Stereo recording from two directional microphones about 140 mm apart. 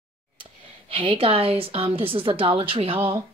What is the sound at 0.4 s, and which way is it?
A woman's voice, 40° right (ahead or behind).